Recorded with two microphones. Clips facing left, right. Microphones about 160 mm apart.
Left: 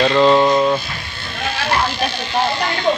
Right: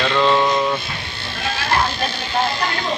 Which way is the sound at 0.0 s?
30° left (ahead or behind).